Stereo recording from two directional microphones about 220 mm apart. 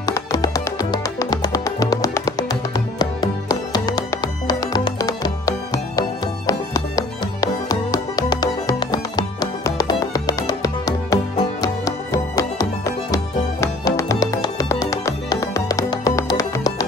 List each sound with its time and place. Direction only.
0.0 s music: 15° left (ahead or behind)